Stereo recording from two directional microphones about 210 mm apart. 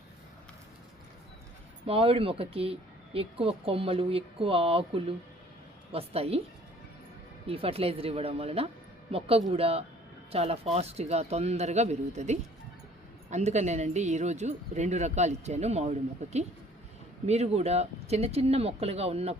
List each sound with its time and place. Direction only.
1.9 s speech: 25° right (ahead or behind)
7.4 s speech: 25° right (ahead or behind)
17.2 s speech: 30° right (ahead or behind)